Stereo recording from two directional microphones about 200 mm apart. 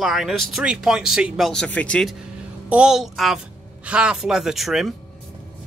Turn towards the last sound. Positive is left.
turn(degrees=0)  # may be behind; listen again after turning